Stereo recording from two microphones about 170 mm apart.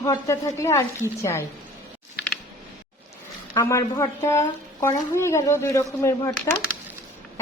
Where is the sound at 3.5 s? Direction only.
20° left (ahead or behind).